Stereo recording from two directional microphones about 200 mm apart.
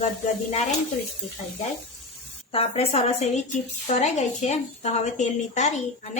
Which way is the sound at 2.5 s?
30° left (ahead or behind).